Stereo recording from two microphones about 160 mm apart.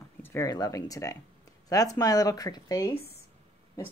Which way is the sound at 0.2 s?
15° left (ahead or behind).